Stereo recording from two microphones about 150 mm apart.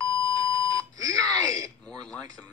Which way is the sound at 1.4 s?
25° right (ahead or behind).